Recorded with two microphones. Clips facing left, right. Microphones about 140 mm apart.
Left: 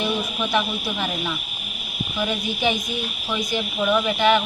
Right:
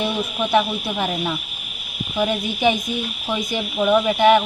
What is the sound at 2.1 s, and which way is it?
Speech, 20° right (ahead or behind).